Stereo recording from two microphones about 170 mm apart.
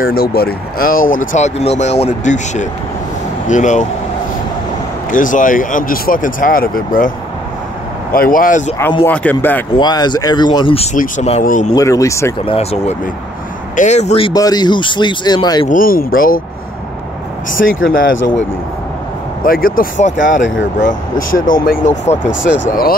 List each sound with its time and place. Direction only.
0.0 s speech: 65° left (ahead or behind); by 3.8 s 45° left (ahead or behind)
5.1 s speech: 50° left (ahead or behind)
8.1 s speech: 55° left (ahead or behind)
9.0 s speech: 10° left (ahead or behind)
9.8 s speech: 25° left (ahead or behind); by 11.7 s 50° left (ahead or behind)
11.7 s speech: 20° left (ahead or behind)
12.4 s speech: 35° left (ahead or behind)
15.7 s speech: 55° left (ahead or behind)
17.5 s speech: 55° left (ahead or behind)
17.8 s speech: 90° left
19.4 s speech: 55° left (ahead or behind)
22.2 s speech: 90° left